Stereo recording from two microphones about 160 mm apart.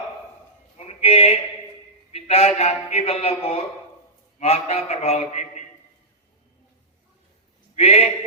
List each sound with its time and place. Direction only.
0.8 s a sound: 40° left (ahead or behind)
2.1 s a man's voice: 40° left (ahead or behind)
7.8 s a man's voice: 40° left (ahead or behind)